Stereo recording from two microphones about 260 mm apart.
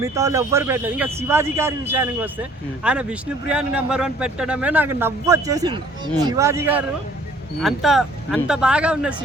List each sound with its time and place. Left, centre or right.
0.0 s speech: centre